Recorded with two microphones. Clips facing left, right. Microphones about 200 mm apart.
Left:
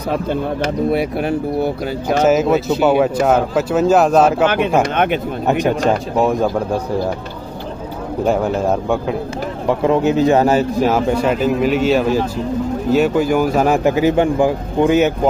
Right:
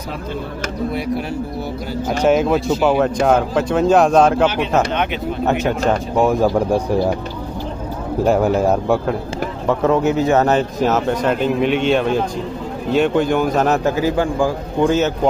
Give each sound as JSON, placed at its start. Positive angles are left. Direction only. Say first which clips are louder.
{"t": 0.9, "sound": "speech", "louder": "left 4 dB", "side_deg": 60}
{"t": 2.2, "sound": "speech", "louder": "even", "side_deg": 5}
{"t": 4.9, "sound": "speech", "louder": "left 4 dB", "side_deg": 50}
{"t": 5.5, "sound": "a man's voice", "louder": "left 3 dB", "side_deg": 15}
{"t": 6.1, "sound": "speech", "louder": "right 3 dB", "side_deg": 0}
{"t": 8.3, "sound": "speech", "louder": "right 2 dB", "side_deg": -5}
{"t": 9.7, "sound": "a man's voice", "louder": "left 1 dB", "side_deg": 15}